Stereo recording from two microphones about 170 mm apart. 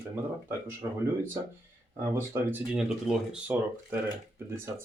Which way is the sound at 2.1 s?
10° right (ahead or behind).